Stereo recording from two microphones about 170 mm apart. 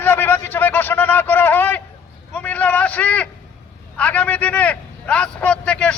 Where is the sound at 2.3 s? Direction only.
10° left (ahead or behind).